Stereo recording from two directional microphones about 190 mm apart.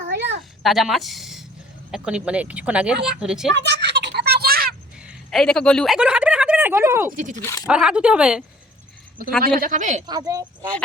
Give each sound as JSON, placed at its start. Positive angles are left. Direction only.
{"t": 0.6, "sound": "a woman's voice", "side_deg": 0}
{"t": 3.5, "sound": "a sound", "side_deg": -65}
{"t": 5.0, "sound": "a sound", "side_deg": 0}
{"t": 7.1, "sound": "speech", "side_deg": -40}
{"t": 7.4, "sound": "speech", "side_deg": 20}
{"t": 7.7, "sound": "speech", "side_deg": -5}
{"t": 9.4, "sound": "speech", "side_deg": -45}
{"t": 10.1, "sound": "speech", "side_deg": -20}